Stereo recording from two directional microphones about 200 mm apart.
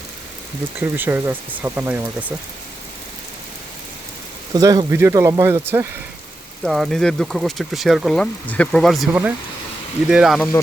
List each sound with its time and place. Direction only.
0.8 s speech: 10° right (ahead or behind)
4.5 s speech: 15° right (ahead or behind)
6.7 s speech: centre (ahead or behind)